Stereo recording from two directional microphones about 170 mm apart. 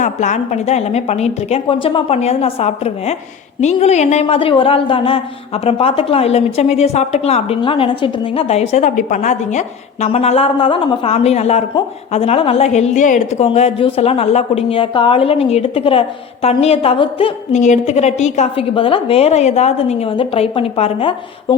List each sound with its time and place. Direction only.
0.0 s a woman's voice: 45° left (ahead or behind)
17.6 s a woman's voice: 40° left (ahead or behind)